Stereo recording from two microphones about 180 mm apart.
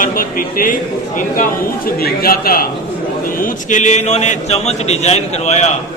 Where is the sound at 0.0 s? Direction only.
50° left (ahead or behind).